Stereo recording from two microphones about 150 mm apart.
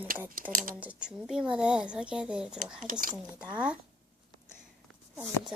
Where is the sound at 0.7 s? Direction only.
10° right (ahead or behind).